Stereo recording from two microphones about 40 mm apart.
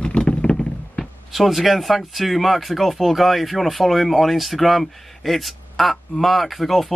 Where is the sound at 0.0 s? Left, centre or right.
Left.